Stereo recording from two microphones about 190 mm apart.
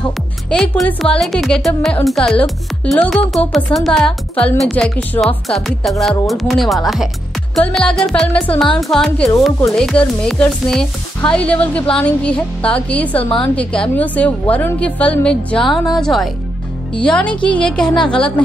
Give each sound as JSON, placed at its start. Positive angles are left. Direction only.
{"t": 0.5, "sound": "speech", "side_deg": 5}
{"t": 17.3, "sound": "a woman's voice", "side_deg": 25}
{"t": 17.6, "sound": "speech", "side_deg": 5}